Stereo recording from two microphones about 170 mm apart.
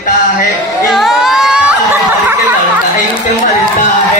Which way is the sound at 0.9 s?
Centre (ahead or behind).